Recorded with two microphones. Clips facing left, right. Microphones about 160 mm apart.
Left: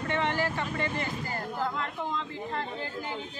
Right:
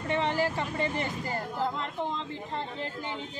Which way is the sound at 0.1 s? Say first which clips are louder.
Right 2 dB; 30° right (ahead or behind).